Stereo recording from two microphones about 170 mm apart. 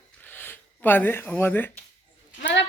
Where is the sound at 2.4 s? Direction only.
90° left.